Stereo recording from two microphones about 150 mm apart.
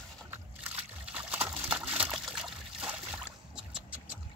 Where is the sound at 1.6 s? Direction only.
5° right (ahead or behind).